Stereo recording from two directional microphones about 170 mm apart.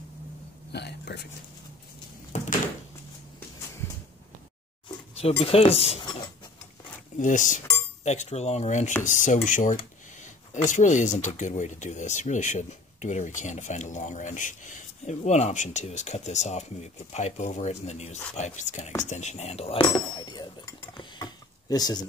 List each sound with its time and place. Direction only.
0.7 s speech: 75° left (ahead or behind)
2.3 s door: 45° left (ahead or behind)
4.8 s a sound: 35° left (ahead or behind)
5.4 s speech: 35° left (ahead or behind)
7.2 s a man's voice: 50° left (ahead or behind)
19.0 s a sound: 45° left (ahead or behind); by 22.0 s 25° left (ahead or behind)